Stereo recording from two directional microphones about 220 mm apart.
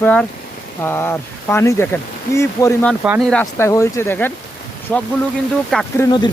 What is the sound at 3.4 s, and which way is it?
Speech, 15° left (ahead or behind).